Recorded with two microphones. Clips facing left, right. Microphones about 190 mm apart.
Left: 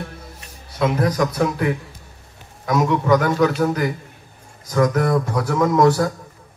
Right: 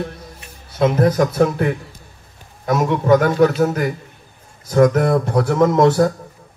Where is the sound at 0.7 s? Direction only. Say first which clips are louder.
Right 4 dB; 25° right (ahead or behind).